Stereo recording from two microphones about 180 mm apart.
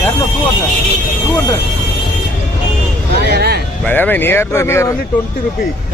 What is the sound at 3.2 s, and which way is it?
Vehicle, 65° right (ahead or behind).